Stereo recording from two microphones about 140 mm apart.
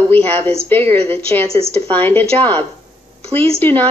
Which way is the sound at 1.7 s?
15° left (ahead or behind).